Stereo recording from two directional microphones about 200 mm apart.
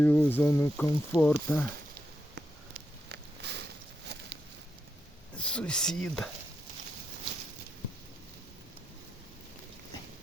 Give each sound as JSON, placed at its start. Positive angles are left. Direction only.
{"t": 0.0, "sound": "speech", "side_deg": 10}
{"t": 3.1, "sound": "a sound", "side_deg": -60}
{"t": 5.4, "sound": "speech", "side_deg": 5}